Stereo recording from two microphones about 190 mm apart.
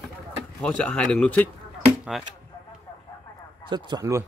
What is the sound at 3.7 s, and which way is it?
Speech, 25° right (ahead or behind).